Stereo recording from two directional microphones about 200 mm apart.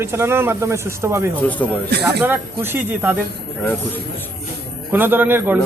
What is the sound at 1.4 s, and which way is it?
Speech, 5° left (ahead or behind).